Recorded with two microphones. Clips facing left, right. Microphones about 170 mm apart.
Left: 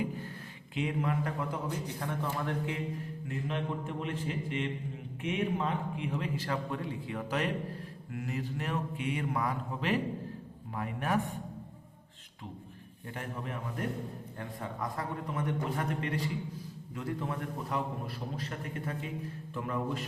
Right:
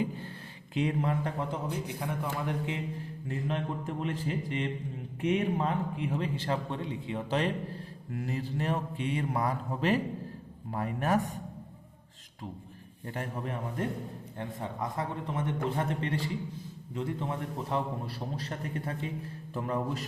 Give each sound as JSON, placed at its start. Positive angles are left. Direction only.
{"t": 0.7, "sound": "speech", "side_deg": -35}
{"t": 2.0, "sound": "a man's voice", "side_deg": -15}
{"t": 3.2, "sound": "a man's voice", "side_deg": -35}
{"t": 13.1, "sound": "speech", "side_deg": -40}
{"t": 14.3, "sound": "a man's voice", "side_deg": -25}